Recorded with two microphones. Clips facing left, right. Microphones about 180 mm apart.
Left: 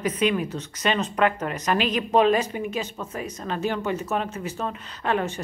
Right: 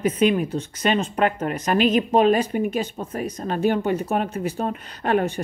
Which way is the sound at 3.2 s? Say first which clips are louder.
Right 5 dB; 35° right (ahead or behind).